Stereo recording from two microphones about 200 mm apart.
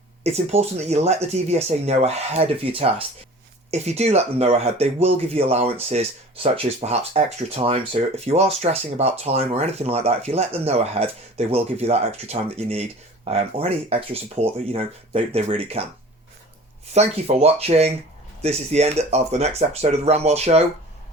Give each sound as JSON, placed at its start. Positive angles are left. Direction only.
{"t": 0.2, "sound": "speech", "side_deg": -30}
{"t": 16.9, "sound": "speech", "side_deg": -30}